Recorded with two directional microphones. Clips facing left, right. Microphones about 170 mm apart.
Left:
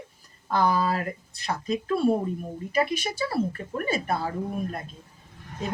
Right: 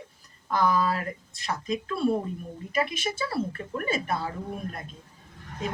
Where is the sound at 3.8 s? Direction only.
35° left (ahead or behind).